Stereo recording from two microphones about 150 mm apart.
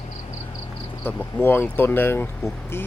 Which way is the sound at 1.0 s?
15° left (ahead or behind).